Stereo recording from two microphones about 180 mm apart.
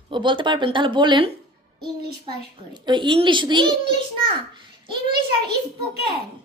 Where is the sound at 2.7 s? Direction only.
25° right (ahead or behind).